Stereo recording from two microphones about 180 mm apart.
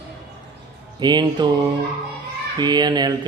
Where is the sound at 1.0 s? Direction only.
25° right (ahead or behind).